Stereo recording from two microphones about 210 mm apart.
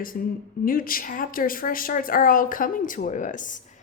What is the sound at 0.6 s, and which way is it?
A woman's voice, 40° left (ahead or behind).